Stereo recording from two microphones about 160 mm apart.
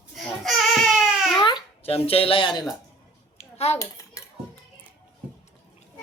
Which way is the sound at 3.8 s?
20° left (ahead or behind).